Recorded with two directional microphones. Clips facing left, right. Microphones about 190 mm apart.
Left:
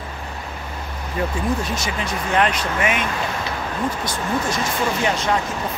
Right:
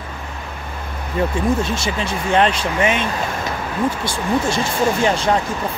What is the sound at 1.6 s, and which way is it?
Speech, 25° right (ahead or behind).